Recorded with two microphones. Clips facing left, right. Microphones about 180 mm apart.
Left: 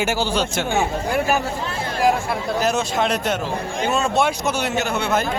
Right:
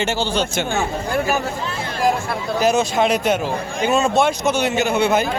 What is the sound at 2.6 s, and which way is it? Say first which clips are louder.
A man's voice: right 6 dB; centre (ahead or behind).